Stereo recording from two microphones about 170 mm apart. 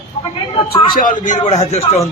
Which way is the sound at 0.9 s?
55° left (ahead or behind).